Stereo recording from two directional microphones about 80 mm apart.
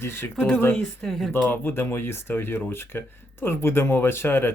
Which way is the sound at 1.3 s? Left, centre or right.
Left.